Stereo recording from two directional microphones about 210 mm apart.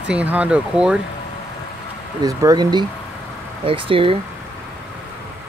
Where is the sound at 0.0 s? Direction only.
5° right (ahead or behind).